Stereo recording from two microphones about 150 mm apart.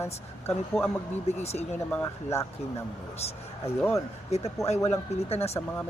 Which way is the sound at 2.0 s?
20° left (ahead or behind).